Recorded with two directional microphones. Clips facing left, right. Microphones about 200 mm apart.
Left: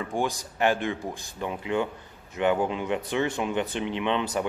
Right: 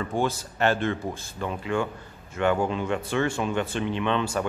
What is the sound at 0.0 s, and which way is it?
Speech, 15° left (ahead or behind).